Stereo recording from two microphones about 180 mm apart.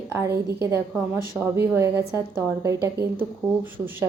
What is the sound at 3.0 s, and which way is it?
Speech, 65° right (ahead or behind).